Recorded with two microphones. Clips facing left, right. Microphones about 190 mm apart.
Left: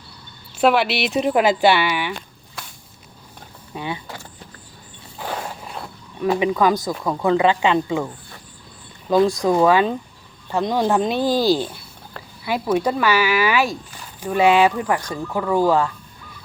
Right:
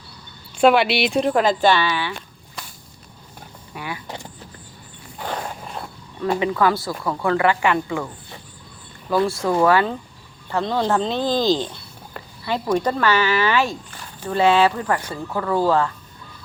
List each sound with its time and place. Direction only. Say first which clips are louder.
0.5 s speech: right 2 dB; centre (ahead or behind)
1.3 s speech: left 3 dB; 10° left (ahead or behind)
3.8 s speech: left 3 dB; 25° left (ahead or behind)
5.1 s a sound: even; 5° left (ahead or behind)
6.4 s speech: left 1 dB; 15° left (ahead or behind)